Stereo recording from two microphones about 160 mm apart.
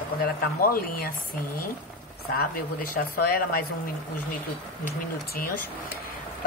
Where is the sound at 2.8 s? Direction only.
65° left (ahead or behind).